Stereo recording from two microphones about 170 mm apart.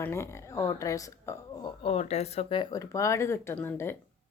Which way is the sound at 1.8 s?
40° left (ahead or behind).